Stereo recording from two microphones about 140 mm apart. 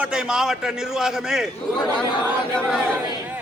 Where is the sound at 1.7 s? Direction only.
30° left (ahead or behind).